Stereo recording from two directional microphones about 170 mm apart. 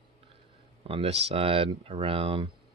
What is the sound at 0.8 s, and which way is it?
Speech, 35° right (ahead or behind).